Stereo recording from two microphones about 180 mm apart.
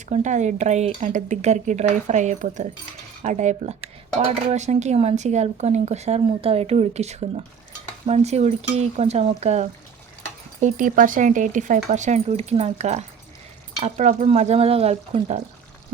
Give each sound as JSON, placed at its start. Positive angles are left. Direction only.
{"t": 0.1, "sound": "speech", "side_deg": -40}